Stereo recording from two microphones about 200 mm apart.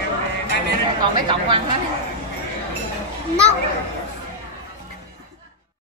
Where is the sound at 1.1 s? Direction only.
25° right (ahead or behind).